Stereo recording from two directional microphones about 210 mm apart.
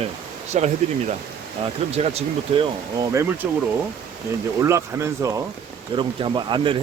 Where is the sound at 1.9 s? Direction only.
30° right (ahead or behind).